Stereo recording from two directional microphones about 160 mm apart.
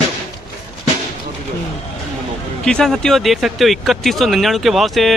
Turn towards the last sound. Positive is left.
turn(degrees=0)  # may be behind; listen again after turning